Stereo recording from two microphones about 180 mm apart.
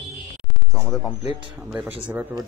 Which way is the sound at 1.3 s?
25° right (ahead or behind).